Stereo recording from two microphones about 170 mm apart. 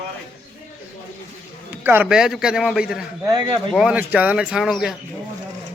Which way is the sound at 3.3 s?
25° right (ahead or behind).